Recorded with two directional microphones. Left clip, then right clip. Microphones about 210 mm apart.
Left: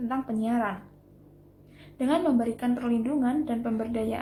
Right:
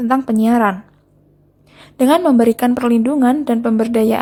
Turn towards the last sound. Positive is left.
turn(degrees=-50)  # may be behind; listen again after turning